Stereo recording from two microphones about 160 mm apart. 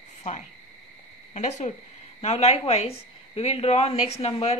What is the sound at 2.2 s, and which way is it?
Speech, 40° left (ahead or behind).